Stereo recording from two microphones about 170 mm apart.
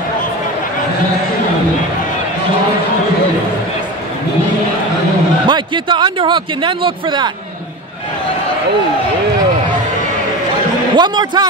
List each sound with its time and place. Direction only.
5.5 s speech: 25° right (ahead or behind)
11.0 s speech: 25° right (ahead or behind)